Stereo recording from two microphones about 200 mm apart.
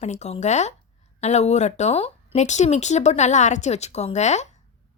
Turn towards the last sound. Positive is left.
turn(degrees=35)  # may be behind; listen again after turning